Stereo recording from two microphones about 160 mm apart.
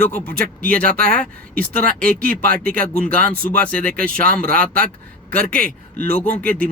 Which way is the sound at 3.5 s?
10° left (ahead or behind).